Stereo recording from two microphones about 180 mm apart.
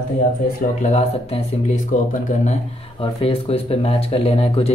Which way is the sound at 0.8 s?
35° left (ahead or behind).